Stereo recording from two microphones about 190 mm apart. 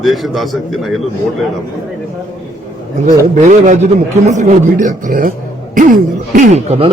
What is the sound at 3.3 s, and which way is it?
Speech, 40° right (ahead or behind).